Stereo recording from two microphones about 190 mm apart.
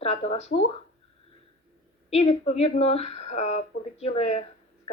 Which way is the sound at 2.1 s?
35° left (ahead or behind).